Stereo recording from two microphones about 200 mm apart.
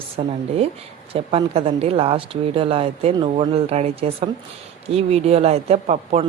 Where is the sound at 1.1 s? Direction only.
30° right (ahead or behind).